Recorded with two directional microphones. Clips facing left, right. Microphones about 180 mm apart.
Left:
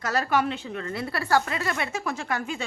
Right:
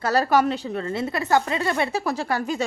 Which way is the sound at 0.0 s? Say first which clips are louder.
Right 5 dB; 35° right (ahead or behind).